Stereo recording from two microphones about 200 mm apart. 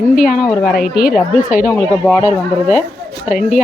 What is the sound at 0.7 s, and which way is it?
Speech, 50° left (ahead or behind).